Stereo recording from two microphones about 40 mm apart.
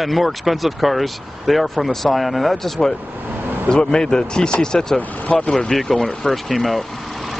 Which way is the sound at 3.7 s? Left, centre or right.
Centre.